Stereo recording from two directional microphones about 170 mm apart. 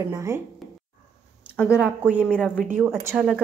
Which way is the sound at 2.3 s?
5° left (ahead or behind).